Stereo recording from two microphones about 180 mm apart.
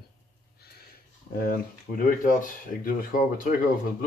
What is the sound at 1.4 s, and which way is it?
Speech, 50° left (ahead or behind).